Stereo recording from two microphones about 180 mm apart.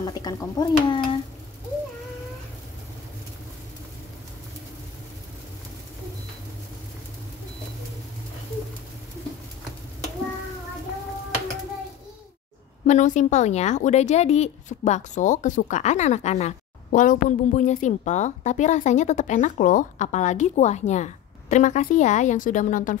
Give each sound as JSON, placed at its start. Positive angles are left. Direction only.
{"t": 0.0, "sound": "speech", "side_deg": 20}
{"t": 12.8, "sound": "a woman's voice", "side_deg": 40}